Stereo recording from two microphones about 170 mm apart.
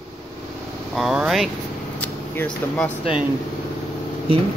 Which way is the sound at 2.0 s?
10° left (ahead or behind).